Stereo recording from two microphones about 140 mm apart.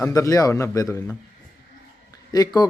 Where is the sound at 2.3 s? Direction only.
30° left (ahead or behind).